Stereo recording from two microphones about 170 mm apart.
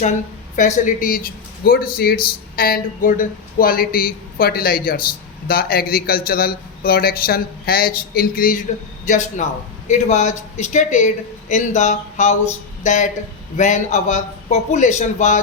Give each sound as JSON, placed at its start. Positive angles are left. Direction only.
{"t": 0.5, "sound": "speech", "side_deg": 50}
{"t": 9.0, "sound": "speech", "side_deg": 45}